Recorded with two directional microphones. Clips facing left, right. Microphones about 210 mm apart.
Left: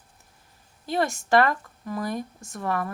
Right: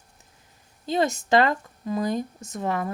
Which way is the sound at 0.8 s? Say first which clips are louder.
Right 2 dB; 20° right (ahead or behind).